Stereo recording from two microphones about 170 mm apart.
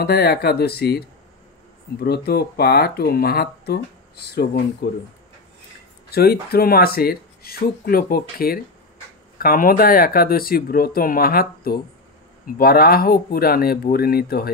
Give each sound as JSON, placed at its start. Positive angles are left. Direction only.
{"t": 0.0, "sound": "speech", "side_deg": 65}
{"t": 2.0, "sound": "speech", "side_deg": 70}
{"t": 6.0, "sound": "speech", "side_deg": 65}